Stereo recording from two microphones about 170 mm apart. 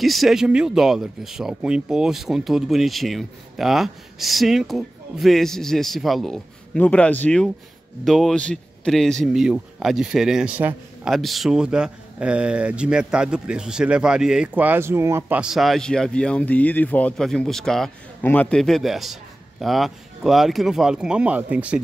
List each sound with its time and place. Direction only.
0.0 s speech: centre (ahead or behind)